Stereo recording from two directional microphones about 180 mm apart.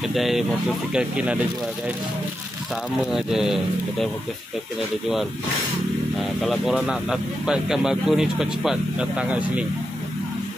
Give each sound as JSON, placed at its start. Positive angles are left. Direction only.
{"t": 0.1, "sound": "speech", "side_deg": 0}
{"t": 3.1, "sound": "speech", "side_deg": 0}
{"t": 6.1, "sound": "speech", "side_deg": 0}